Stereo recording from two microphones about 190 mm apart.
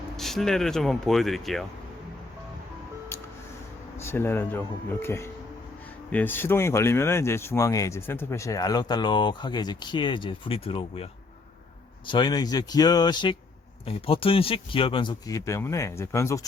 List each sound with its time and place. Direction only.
0.2 s speech: centre (ahead or behind)
4.0 s speech: 10° left (ahead or behind)